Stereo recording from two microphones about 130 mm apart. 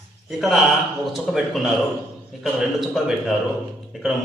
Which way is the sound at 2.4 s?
Centre (ahead or behind).